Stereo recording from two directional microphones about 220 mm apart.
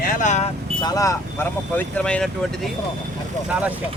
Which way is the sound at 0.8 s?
15° left (ahead or behind).